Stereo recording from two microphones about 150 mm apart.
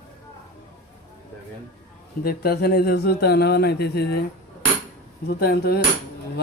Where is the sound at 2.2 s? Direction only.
90° left.